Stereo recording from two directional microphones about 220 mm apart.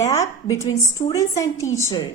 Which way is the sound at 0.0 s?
15° left (ahead or behind).